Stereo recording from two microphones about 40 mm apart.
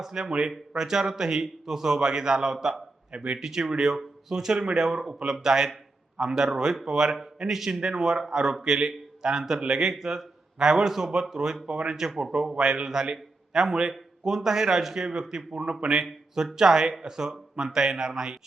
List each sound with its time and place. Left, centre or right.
0.0 s a man's voice: centre